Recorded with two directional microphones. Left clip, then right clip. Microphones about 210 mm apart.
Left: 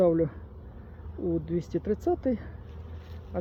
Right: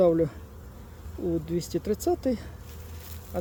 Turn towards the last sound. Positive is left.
turn(degrees=-10)  # may be behind; listen again after turning